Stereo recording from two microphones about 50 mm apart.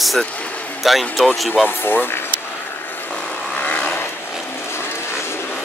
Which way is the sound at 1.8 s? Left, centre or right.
Left.